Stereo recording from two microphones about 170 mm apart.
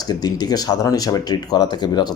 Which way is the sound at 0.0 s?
25° left (ahead or behind).